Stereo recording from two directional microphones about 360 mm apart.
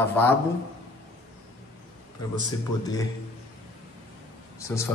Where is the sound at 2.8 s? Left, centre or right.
Centre.